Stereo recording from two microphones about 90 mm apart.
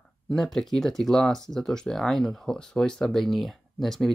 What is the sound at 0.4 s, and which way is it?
Speech, 5° left (ahead or behind).